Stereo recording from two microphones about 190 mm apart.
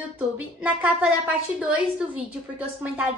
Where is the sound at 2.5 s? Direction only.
5° right (ahead or behind).